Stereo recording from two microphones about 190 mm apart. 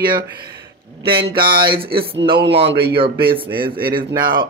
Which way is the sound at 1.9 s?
55° right (ahead or behind).